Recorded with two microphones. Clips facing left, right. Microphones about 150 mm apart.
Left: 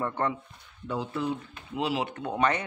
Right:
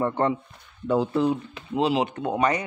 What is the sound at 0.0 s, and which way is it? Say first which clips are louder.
Speech: right 6 dB; 20° right (ahead or behind).